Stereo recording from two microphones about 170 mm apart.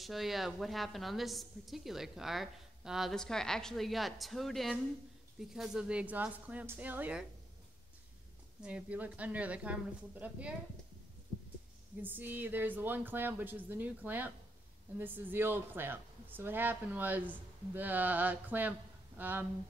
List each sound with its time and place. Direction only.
0.0 s a woman's voice: centre (ahead or behind)
8.6 s speech: 5° right (ahead or behind)
12.0 s speech: 10° right (ahead or behind)